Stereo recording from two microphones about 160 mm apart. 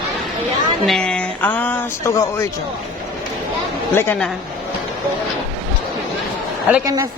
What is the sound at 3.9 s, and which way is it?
Speech, 15° left (ahead or behind).